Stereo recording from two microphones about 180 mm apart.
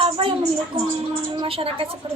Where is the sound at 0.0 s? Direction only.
30° right (ahead or behind).